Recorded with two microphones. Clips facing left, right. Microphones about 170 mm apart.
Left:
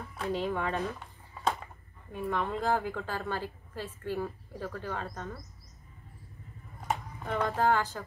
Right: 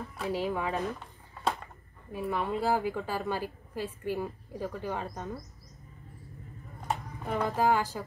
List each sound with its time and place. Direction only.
0.2 s a woman's voice: 5° right (ahead or behind)
1.4 s a sound: centre (ahead or behind)
2.1 s a woman's voice: 5° right (ahead or behind)
6.9 s speech: 5° right (ahead or behind)